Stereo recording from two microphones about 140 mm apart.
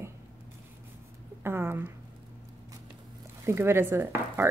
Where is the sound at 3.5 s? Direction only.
15° right (ahead or behind).